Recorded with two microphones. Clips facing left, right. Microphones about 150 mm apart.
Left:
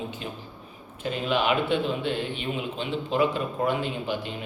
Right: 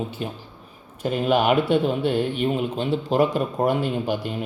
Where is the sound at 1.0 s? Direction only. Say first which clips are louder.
Right 5 dB; 50° right (ahead or behind).